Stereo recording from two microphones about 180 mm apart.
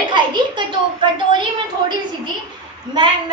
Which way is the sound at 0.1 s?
25° right (ahead or behind).